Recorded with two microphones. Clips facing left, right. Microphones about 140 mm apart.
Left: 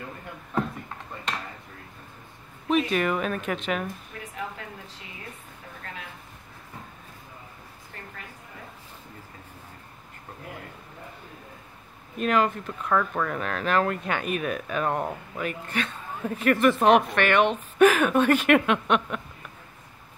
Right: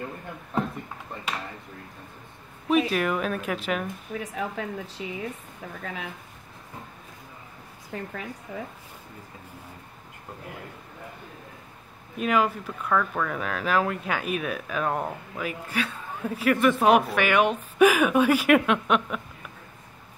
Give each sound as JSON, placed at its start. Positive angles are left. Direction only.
{"t": 2.7, "sound": "speech", "side_deg": 0}
{"t": 4.2, "sound": "a woman's voice", "side_deg": -90}
{"t": 12.2, "sound": "a woman's voice", "side_deg": -5}
{"t": 12.9, "sound": "a woman's voice", "side_deg": 5}